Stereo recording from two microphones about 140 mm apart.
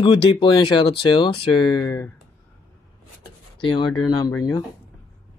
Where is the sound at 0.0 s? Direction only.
35° left (ahead or behind).